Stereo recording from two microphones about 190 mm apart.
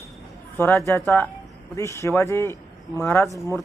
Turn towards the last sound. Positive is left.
turn(degrees=15)  # may be behind; listen again after turning